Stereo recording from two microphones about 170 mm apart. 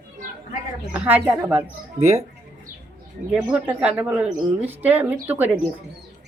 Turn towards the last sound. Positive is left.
turn(degrees=-10)  # may be behind; listen again after turning